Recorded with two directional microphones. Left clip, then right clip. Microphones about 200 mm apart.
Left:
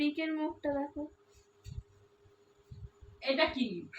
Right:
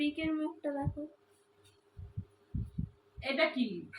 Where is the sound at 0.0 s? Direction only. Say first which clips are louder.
Left 1 dB; 15° left (ahead or behind).